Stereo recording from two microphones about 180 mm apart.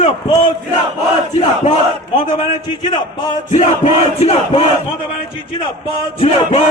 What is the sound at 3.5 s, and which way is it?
Crowd, 40° left (ahead or behind).